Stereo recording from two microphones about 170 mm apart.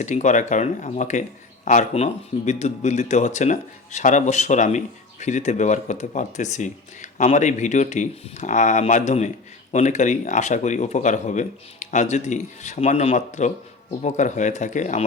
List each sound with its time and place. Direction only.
0.0 s speech: 45° left (ahead or behind)